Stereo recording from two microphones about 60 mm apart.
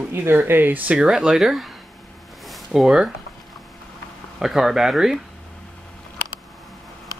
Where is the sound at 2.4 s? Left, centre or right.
Centre.